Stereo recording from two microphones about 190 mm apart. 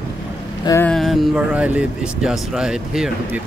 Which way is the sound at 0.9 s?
Centre (ahead or behind).